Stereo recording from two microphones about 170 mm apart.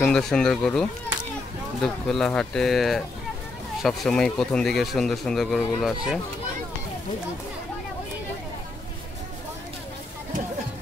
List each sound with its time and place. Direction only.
0.0 s speech: 5° left (ahead or behind)